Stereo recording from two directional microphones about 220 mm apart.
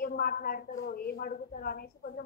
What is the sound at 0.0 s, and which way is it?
A woman's voice, 45° left (ahead or behind).